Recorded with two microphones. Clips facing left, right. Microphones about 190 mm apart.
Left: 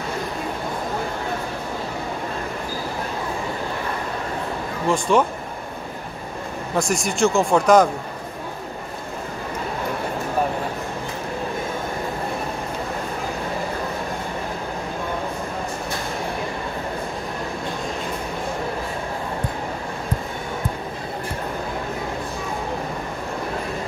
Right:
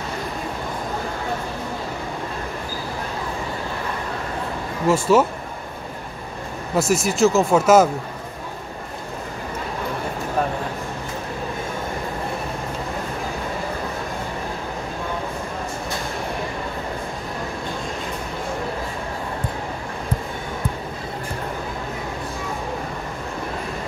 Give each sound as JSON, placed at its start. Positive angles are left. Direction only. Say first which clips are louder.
{"t": 4.8, "sound": "speech", "louder": "right 2 dB", "side_deg": -5}
{"t": 6.8, "sound": "speech", "louder": "right 3 dB", "side_deg": -5}